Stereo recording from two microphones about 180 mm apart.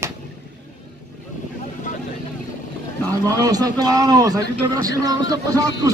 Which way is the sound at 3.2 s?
20° right (ahead or behind).